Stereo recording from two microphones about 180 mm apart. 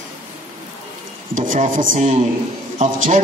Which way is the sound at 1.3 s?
45° right (ahead or behind).